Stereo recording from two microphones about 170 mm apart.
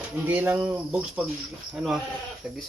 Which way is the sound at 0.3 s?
10° right (ahead or behind).